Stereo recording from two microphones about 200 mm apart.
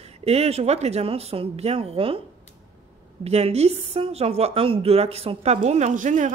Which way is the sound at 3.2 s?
30° right (ahead or behind).